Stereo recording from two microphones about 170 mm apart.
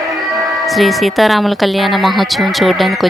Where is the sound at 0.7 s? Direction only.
Centre (ahead or behind).